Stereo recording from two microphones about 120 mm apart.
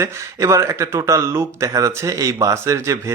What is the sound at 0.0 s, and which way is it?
Speech, 25° right (ahead or behind).